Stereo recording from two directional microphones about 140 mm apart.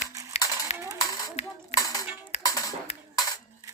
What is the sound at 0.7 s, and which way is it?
Coin, 50° left (ahead or behind).